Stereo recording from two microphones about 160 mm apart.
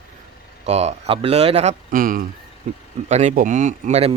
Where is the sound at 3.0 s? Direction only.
45° right (ahead or behind).